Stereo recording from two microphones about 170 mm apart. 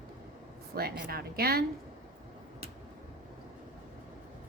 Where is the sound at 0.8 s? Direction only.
65° right (ahead or behind).